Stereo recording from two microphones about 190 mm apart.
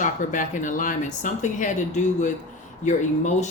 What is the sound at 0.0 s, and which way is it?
A woman's voice, 45° left (ahead or behind).